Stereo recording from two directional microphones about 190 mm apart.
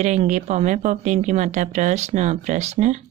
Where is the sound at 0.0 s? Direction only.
40° right (ahead or behind).